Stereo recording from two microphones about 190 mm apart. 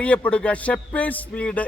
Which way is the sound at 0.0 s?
5° left (ahead or behind).